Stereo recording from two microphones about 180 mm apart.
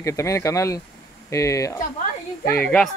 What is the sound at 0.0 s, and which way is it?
Speech, 15° left (ahead or behind).